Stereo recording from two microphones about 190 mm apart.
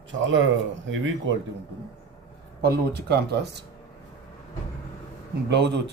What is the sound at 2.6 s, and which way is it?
Speech, 55° right (ahead or behind).